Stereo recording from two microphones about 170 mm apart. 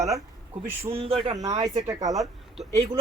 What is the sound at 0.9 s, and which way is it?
Speech, 35° right (ahead or behind).